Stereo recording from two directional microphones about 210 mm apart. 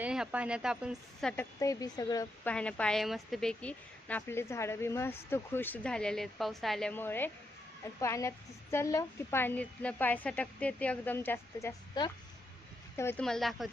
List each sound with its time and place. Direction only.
0.0 s a woman's voice: 5° right (ahead or behind)
1.3 s a woman's voice: 10° left (ahead or behind)
2.5 s a woman's voice: 5° left (ahead or behind)
12.0 s speech: 20° left (ahead or behind)
13.0 s a woman's voice: 10° left (ahead or behind)